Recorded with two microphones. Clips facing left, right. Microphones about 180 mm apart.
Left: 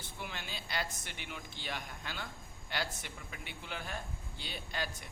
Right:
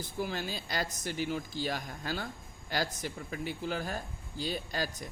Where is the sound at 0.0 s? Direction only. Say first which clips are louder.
Right 10 dB; 35° right (ahead or behind).